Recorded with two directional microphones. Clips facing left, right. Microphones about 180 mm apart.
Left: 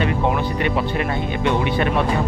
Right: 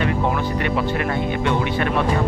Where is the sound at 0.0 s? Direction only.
20° left (ahead or behind).